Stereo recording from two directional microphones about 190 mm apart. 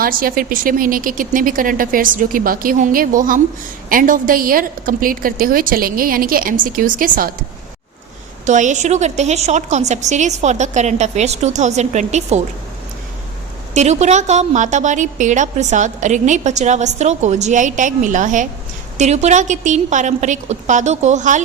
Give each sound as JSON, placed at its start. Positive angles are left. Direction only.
{"t": 0.0, "sound": "a woman's voice", "side_deg": -50}
{"t": 8.4, "sound": "a woman's voice", "side_deg": -40}
{"t": 13.7, "sound": "a woman's voice", "side_deg": -35}